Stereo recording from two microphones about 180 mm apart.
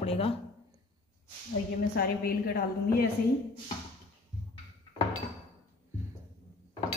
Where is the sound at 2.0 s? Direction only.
55° left (ahead or behind).